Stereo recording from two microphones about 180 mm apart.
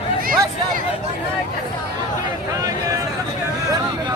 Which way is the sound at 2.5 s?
20° right (ahead or behind).